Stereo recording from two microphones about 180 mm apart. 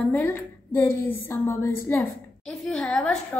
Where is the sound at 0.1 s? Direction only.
10° left (ahead or behind).